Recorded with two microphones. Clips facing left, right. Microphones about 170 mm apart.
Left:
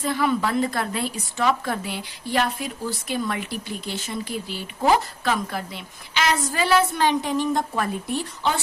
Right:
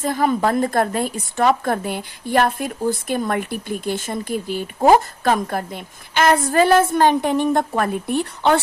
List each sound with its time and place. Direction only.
0.0 s a woman's voice: 45° right (ahead or behind)